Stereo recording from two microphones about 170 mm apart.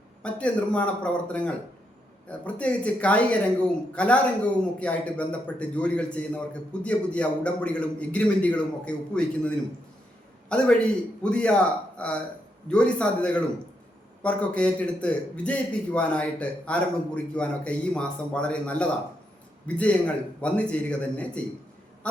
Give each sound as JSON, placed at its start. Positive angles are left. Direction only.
{"t": 0.2, "sound": "a man's voice", "side_deg": 5}
{"t": 10.5, "sound": "a man's voice", "side_deg": 5}
{"t": 22.0, "sound": "quack", "side_deg": 5}